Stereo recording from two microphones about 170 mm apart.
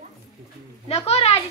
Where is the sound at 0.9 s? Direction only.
35° left (ahead or behind).